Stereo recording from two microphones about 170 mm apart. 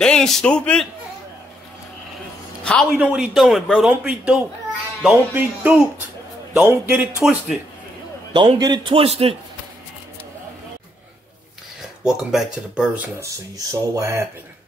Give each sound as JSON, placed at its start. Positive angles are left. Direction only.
{"t": 0.0, "sound": "a man's voice", "side_deg": 5}
{"t": 2.6, "sound": "a man's voice", "side_deg": 5}
{"t": 2.9, "sound": "a man's voice", "side_deg": -10}
{"t": 8.3, "sound": "a man's voice", "side_deg": -30}
{"t": 12.0, "sound": "a man's voice", "side_deg": -5}